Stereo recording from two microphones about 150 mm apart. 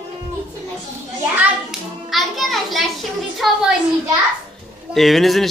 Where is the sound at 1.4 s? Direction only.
Centre (ahead or behind).